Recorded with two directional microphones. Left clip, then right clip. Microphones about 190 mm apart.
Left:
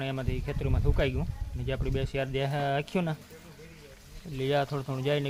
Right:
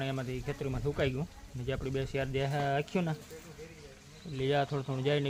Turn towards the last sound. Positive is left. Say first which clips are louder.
# left 2 dB
turn(degrees=15)  # may be behind; listen again after turning